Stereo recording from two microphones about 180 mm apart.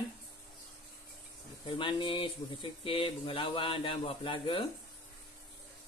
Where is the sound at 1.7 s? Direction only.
25° left (ahead or behind).